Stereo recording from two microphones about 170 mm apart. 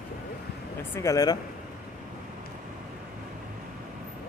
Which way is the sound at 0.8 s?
20° left (ahead or behind).